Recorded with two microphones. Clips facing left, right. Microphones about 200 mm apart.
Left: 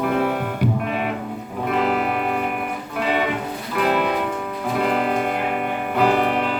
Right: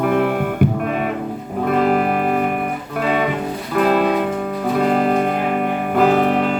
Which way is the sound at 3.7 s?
45° right (ahead or behind).